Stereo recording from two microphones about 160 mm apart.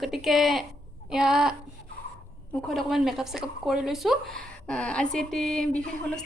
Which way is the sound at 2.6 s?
Centre (ahead or behind).